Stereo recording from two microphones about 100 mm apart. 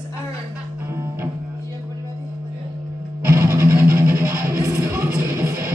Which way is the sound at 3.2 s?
25° right (ahead or behind).